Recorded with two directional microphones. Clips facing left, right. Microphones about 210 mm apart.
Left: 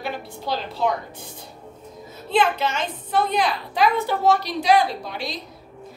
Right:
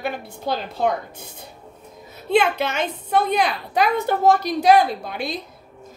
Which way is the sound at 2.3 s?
65° right (ahead or behind).